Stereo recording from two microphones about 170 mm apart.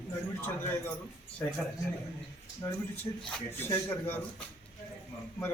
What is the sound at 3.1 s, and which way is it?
Speech, 25° left (ahead or behind).